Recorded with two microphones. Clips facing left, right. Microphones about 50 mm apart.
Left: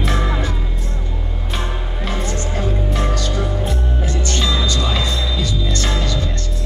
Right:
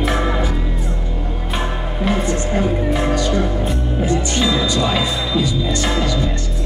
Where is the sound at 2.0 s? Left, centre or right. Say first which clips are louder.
Right 6 dB; centre.